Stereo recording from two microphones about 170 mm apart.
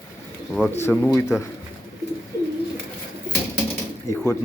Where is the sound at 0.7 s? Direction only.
10° left (ahead or behind).